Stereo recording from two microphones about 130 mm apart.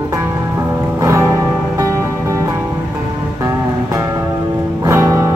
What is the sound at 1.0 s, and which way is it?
Music, 20° right (ahead or behind).